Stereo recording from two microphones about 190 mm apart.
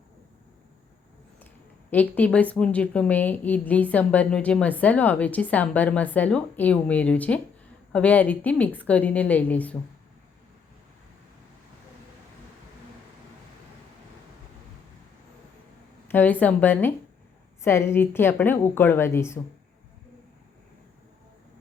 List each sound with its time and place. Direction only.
2.1 s a woman's voice: 5° left (ahead or behind)
16.1 s a woman's voice: 10° left (ahead or behind)